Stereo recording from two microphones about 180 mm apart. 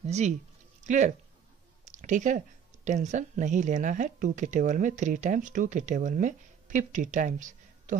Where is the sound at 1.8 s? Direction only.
45° right (ahead or behind).